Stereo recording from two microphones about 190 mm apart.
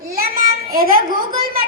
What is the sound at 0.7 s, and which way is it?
Speech, 50° right (ahead or behind).